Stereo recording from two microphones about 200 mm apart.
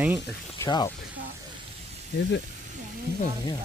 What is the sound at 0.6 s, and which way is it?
Speech, 20° left (ahead or behind).